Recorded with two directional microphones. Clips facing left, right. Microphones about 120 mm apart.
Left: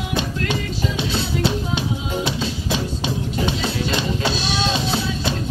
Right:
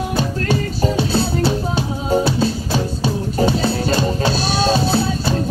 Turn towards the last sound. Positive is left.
turn(degrees=-40)  # may be behind; listen again after turning